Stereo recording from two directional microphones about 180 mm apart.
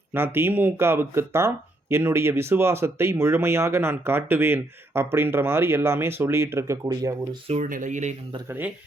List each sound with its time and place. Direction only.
0.3 s speech: 10° right (ahead or behind)
7.4 s speech: 40° right (ahead or behind)
8.4 s speech: 10° right (ahead or behind)